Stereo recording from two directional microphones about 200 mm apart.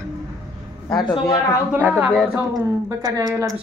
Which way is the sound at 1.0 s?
20° left (ahead or behind).